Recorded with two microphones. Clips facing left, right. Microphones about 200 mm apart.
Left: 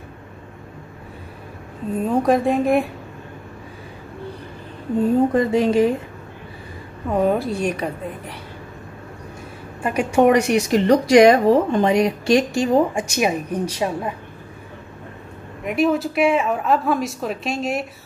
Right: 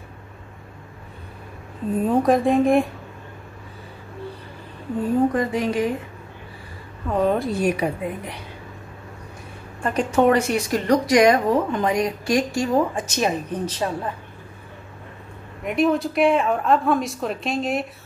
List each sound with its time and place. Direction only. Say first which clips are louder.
2.0 s speech: even; centre (ahead or behind)
5.3 s speech: left 5 dB; 25° left (ahead or behind)
7.1 s speech: left 1 dB; 10° left (ahead or behind)
9.8 s speech: left 2 dB; 10° left (ahead or behind)
15.6 s speech: left 1 dB; centre (ahead or behind)